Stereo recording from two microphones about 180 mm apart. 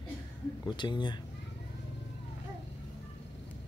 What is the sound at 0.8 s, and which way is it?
Speech, 25° left (ahead or behind).